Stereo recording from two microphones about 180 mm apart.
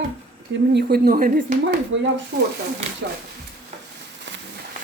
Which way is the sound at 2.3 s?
60° right (ahead or behind).